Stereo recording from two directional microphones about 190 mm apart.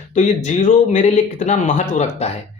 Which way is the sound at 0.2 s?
40° left (ahead or behind).